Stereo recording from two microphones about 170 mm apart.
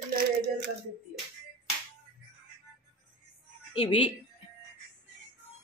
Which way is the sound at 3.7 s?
30° left (ahead or behind).